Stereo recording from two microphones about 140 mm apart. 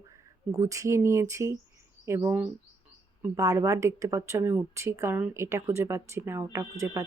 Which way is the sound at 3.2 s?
25° right (ahead or behind).